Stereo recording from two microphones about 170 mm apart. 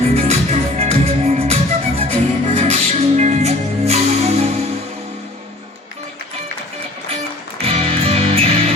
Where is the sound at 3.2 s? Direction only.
40° right (ahead or behind).